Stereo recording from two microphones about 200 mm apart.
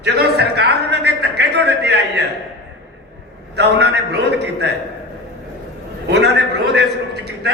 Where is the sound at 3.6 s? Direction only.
60° right (ahead or behind).